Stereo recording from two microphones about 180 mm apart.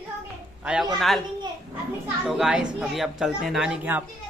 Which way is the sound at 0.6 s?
5° right (ahead or behind).